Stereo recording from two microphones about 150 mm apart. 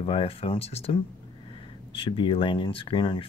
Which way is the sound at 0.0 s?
40° left (ahead or behind).